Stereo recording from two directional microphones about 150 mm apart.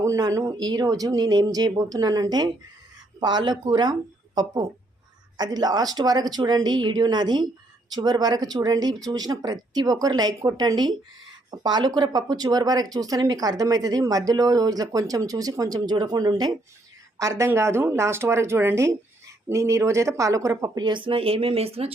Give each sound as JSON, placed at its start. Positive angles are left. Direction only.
{"t": 0.0, "sound": "speech", "side_deg": -20}
{"t": 5.4, "sound": "a woman's voice", "side_deg": -25}